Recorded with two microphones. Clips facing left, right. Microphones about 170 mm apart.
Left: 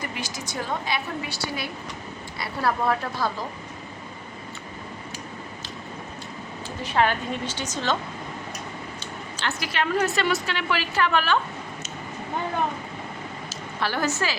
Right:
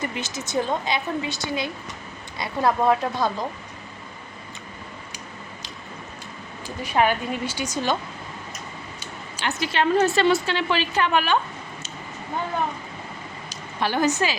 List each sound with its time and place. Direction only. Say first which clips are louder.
0.0 s a woman's voice: right 3 dB; 25° right (ahead or behind)
6.7 s a woman's voice: right 2 dB; 15° right (ahead or behind)
9.0 s speech: even; 15° right (ahead or behind)
13.5 s a woman's voice: right 3 dB; 20° right (ahead or behind)